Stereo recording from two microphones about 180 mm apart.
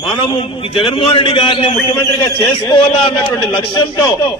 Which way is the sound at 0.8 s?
30° left (ahead or behind).